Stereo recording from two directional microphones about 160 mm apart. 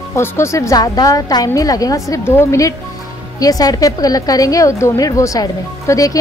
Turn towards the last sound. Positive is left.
turn(degrees=20)  # may be behind; listen again after turning